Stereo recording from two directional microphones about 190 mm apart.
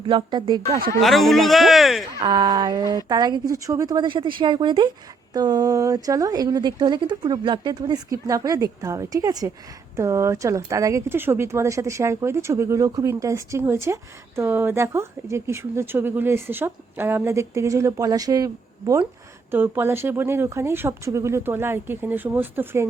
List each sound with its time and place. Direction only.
0.0 s speech: 25° right (ahead or behind)
1.0 s a man's voice: centre (ahead or behind)
2.2 s speech: 20° right (ahead or behind)